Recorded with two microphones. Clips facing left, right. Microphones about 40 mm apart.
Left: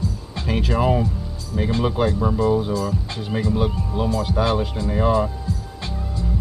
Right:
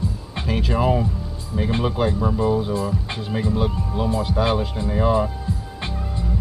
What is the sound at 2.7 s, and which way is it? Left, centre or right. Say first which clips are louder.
Speech: even; right.